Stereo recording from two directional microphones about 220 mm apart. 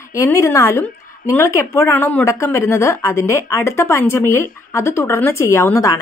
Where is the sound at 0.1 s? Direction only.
15° left (ahead or behind).